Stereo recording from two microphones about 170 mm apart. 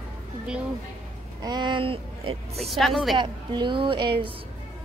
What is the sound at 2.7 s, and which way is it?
Speech, centre (ahead or behind).